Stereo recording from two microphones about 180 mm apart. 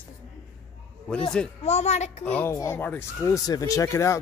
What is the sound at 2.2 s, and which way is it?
Speech, 10° left (ahead or behind).